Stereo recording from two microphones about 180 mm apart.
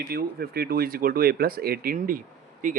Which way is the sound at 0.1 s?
60° right (ahead or behind).